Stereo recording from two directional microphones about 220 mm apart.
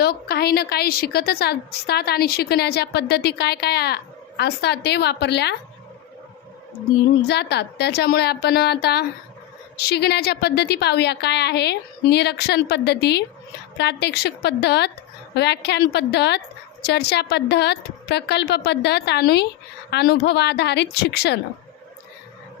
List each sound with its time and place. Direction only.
0.0 s a woman's voice: 45° left (ahead or behind)
7.3 s a woman's voice: 50° left (ahead or behind)